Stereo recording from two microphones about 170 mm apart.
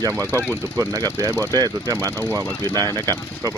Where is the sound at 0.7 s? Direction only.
20° right (ahead or behind).